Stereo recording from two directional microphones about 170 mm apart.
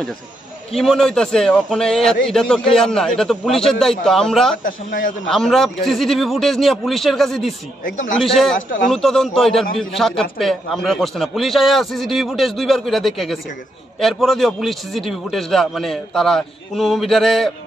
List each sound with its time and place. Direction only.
0.7 s a man's voice: 5° left (ahead or behind)
4.6 s a man's voice: 55° left (ahead or behind)
5.2 s a man's voice: centre (ahead or behind)